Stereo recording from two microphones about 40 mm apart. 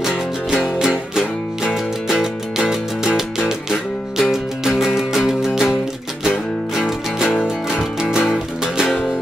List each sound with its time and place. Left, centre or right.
0.0 s music: centre